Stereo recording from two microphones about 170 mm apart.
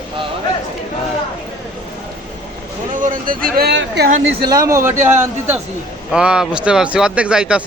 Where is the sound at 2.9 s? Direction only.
55° right (ahead or behind); by 4.1 s 80° right.